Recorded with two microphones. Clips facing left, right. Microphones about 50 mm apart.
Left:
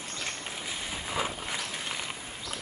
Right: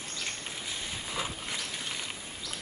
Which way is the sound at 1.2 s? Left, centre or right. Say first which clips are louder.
Left 4 dB; left.